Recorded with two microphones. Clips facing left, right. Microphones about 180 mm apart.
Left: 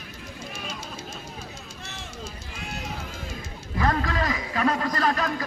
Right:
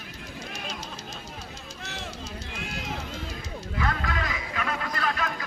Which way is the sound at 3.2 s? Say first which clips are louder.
Right 1 dB; 45° left (ahead or behind).